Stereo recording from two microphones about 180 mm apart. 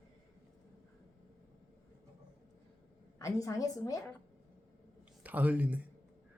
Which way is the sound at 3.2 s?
20° left (ahead or behind).